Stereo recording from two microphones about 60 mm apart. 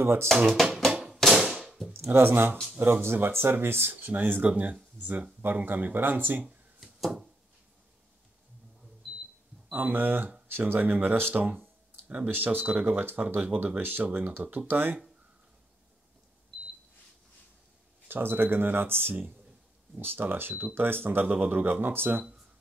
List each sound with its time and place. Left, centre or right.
0.0 s speech: right
1.1 s a sound: centre
2.0 s speech: right
6.8 s a sound: centre
9.7 s speech: right
18.0 s speech: right